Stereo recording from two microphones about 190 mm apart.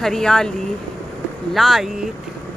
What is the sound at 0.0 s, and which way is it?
Speech, 5° left (ahead or behind).